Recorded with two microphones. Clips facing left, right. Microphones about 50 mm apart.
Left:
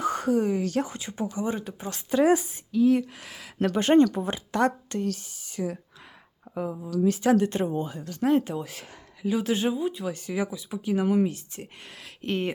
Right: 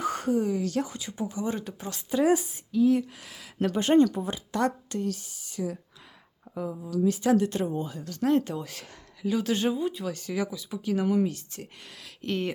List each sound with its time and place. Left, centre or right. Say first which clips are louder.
0.4 s speech: left 2 dB; left
1.4 s speech: left 1 dB; centre
2.0 s speech: left 2 dB; left
8.2 s speech: left 1 dB; centre